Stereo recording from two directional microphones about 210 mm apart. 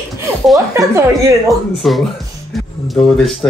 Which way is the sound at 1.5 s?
Centre (ahead or behind).